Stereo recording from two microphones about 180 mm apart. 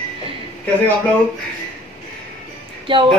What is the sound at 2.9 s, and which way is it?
Speech, 30° right (ahead or behind).